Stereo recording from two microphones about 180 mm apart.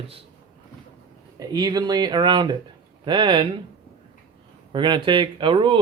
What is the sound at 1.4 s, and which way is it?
Speech, 20° right (ahead or behind).